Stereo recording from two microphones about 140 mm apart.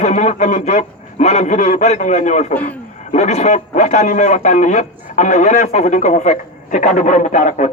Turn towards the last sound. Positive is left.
turn(degrees=60)  # may be behind; listen again after turning